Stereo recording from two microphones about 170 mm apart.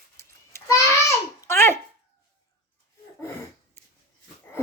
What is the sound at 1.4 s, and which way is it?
Babbling, 15° left (ahead or behind).